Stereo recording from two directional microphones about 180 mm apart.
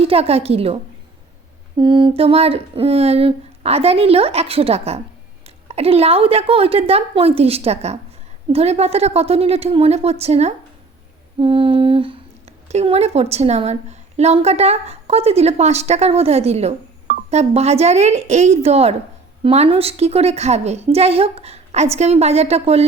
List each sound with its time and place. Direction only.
0.0 s speech: 35° right (ahead or behind)
1.8 s speech: 25° right (ahead or behind)